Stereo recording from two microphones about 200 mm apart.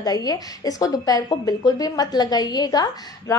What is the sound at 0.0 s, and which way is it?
Speech, 20° left (ahead or behind).